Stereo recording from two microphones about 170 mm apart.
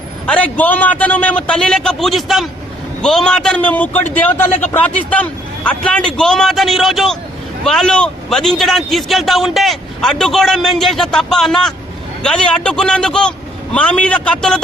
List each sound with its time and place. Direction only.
0.3 s a man's voice: 10° left (ahead or behind)